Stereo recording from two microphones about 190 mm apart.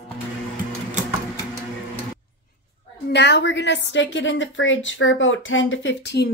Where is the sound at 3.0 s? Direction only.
60° left (ahead or behind).